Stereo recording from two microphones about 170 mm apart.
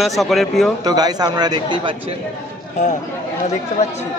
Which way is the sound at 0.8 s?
20° right (ahead or behind).